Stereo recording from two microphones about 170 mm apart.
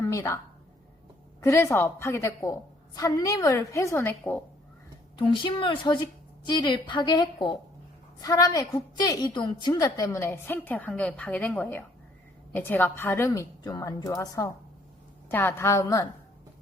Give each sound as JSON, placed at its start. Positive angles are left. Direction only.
{"t": 0.0, "sound": "a woman's voice", "side_deg": 15}
{"t": 1.4, "sound": "a woman's voice", "side_deg": 15}
{"t": 5.1, "sound": "a woman's voice", "side_deg": 30}